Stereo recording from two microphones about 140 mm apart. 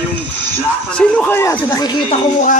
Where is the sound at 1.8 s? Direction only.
30° left (ahead or behind).